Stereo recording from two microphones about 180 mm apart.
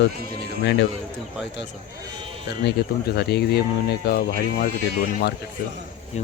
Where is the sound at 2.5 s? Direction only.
70° left (ahead or behind).